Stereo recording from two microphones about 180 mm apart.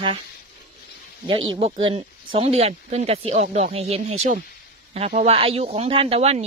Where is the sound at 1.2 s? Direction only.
30° right (ahead or behind).